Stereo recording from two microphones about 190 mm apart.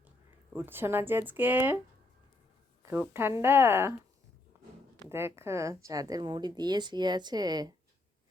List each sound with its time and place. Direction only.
0.5 s speech: 10° right (ahead or behind)
2.8 s speech: 15° right (ahead or behind)
4.5 s a sound: 10° right (ahead or behind)
5.0 s a woman's voice: 15° right (ahead or behind)